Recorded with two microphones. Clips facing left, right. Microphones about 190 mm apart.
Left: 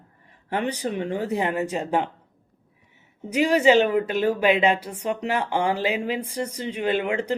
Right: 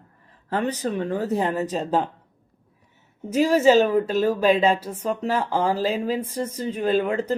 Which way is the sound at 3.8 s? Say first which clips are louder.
Right 1 dB; 35° right (ahead or behind).